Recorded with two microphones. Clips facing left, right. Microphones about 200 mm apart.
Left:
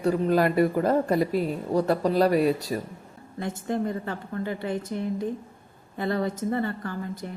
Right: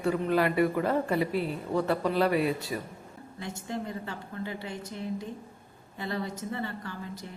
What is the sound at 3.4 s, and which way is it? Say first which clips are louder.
A woman's voice: left 8 dB; 50° left (ahead or behind).